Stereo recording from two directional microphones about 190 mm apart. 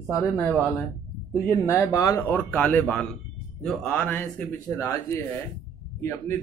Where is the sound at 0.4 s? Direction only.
10° left (ahead or behind).